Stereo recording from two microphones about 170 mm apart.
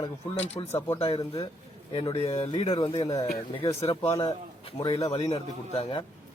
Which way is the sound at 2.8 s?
25° left (ahead or behind).